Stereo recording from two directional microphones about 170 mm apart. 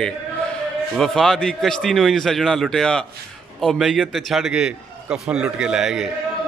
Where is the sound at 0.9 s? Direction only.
Centre (ahead or behind).